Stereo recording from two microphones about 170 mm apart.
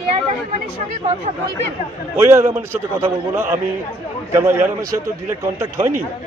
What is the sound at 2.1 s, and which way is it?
A man's voice, 15° right (ahead or behind).